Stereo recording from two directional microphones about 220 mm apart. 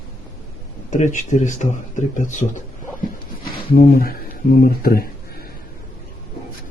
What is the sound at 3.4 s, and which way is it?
Speech, 40° left (ahead or behind).